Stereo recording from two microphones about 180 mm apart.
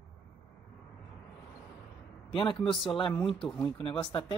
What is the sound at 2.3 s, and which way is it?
A man's voice, 30° left (ahead or behind).